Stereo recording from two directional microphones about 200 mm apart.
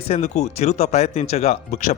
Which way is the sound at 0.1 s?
35° left (ahead or behind).